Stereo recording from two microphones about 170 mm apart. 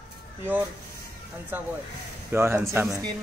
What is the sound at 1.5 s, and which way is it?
Speech, 10° right (ahead or behind).